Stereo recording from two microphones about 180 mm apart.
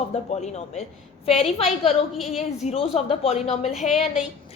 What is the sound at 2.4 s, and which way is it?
A woman's voice, 35° left (ahead or behind).